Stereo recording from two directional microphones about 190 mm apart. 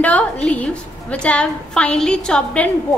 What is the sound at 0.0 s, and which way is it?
A woman's voice, 5° left (ahead or behind).